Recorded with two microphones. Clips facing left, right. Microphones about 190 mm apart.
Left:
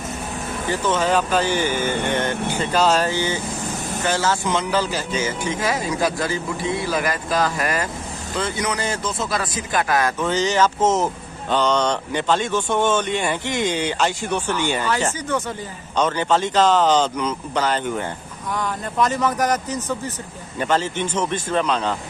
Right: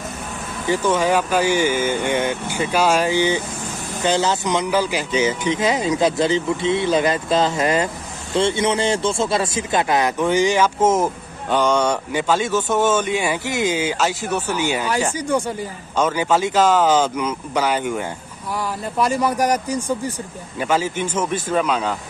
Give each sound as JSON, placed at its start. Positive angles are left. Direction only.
{"t": 0.7, "sound": "speech", "side_deg": -10}